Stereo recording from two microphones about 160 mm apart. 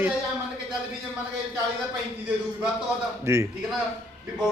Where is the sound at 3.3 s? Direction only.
15° right (ahead or behind).